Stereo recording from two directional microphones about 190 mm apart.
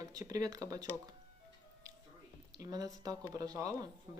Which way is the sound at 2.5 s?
20° right (ahead or behind).